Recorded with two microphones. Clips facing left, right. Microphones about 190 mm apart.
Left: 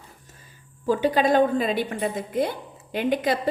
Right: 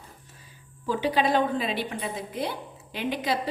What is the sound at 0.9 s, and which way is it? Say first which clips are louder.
A woman's voice: left 4 dB; 45° left (ahead or behind).